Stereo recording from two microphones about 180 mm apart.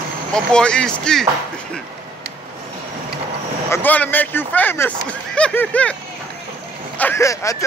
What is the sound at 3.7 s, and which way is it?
A man's voice, 10° left (ahead or behind).